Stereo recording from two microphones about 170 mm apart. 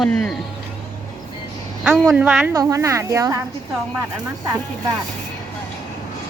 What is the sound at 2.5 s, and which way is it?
Speech, 20° right (ahead or behind).